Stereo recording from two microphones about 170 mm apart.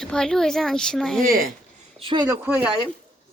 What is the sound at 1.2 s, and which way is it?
Speech, 55° right (ahead or behind).